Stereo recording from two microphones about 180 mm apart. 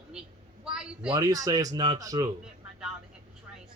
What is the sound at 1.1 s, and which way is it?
Speech, 20° right (ahead or behind).